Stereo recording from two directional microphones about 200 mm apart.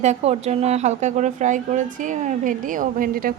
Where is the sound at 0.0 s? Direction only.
35° right (ahead or behind).